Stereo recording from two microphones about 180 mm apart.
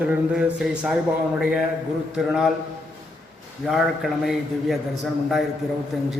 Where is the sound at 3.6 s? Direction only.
Centre (ahead or behind).